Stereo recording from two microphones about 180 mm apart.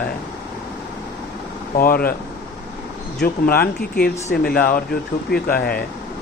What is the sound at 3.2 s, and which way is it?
Speech, 55° left (ahead or behind).